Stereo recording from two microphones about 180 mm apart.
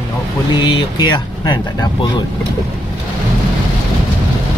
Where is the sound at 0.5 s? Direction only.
25° left (ahead or behind).